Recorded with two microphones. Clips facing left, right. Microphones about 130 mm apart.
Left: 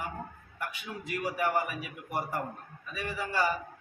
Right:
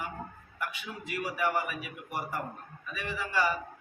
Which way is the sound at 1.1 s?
40° left (ahead or behind).